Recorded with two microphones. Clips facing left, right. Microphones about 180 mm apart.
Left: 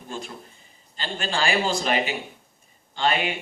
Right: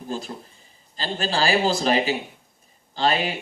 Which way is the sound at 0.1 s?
35° right (ahead or behind).